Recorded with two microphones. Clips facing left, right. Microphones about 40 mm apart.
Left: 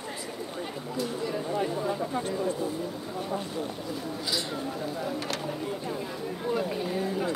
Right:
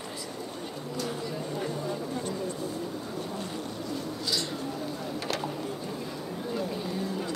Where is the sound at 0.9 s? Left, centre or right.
Centre.